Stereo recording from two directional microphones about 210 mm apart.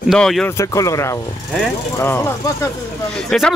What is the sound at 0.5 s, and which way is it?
Speech, 15° left (ahead or behind).